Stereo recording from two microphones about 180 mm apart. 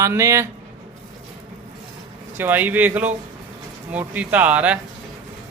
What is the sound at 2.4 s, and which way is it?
Speech, 10° right (ahead or behind).